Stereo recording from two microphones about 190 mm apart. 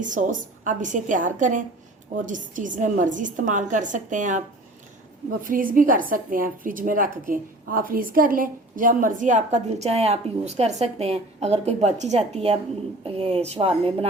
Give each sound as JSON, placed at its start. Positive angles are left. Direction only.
{"t": 0.0, "sound": "a woman's voice", "side_deg": -40}